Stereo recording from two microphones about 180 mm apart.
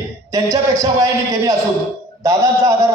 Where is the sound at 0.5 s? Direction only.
15° right (ahead or behind).